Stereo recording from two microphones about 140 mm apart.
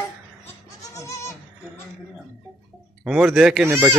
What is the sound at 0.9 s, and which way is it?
Goat, 20° left (ahead or behind).